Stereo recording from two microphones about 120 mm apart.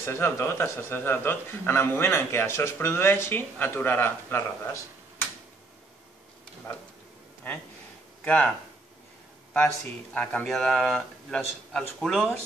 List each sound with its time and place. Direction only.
0.0 s a man's voice: 20° left (ahead or behind)
8.2 s speech: 10° left (ahead or behind)
10.1 s a man's voice: 10° left (ahead or behind)